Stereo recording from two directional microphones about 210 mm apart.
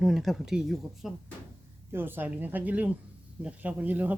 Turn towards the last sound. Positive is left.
turn(degrees=-10)  # may be behind; listen again after turning